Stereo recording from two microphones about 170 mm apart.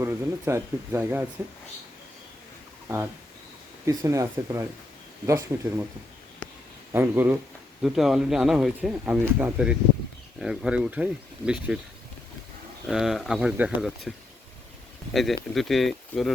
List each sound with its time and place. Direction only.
0.0 s speech: 15° right (ahead or behind)
3.8 s speech: 20° right (ahead or behind)
6.9 s speech: 10° right (ahead or behind)
12.9 s speech: centre (ahead or behind)
15.1 s speech: centre (ahead or behind)